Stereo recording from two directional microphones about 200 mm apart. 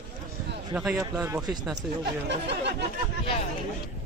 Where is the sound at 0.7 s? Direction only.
5° right (ahead or behind).